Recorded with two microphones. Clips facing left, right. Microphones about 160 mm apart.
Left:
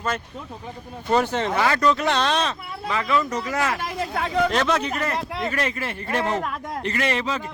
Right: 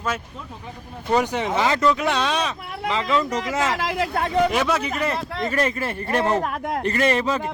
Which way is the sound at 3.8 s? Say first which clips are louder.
Right 4 dB; 90° right.